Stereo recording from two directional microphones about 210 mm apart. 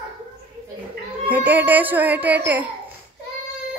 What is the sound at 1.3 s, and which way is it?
A child's voice, 5° right (ahead or behind).